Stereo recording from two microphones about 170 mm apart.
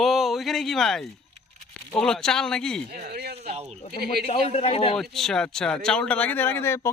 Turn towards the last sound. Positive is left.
turn(degrees=15)  # may be behind; listen again after turning